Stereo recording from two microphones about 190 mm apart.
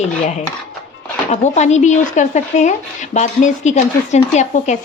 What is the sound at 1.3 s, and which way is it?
Speech, 35° left (ahead or behind).